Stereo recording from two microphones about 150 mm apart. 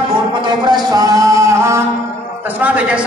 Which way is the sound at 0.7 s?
25° right (ahead or behind).